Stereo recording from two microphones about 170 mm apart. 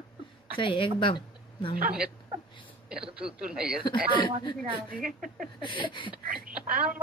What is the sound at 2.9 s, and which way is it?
Speech, 5° right (ahead or behind).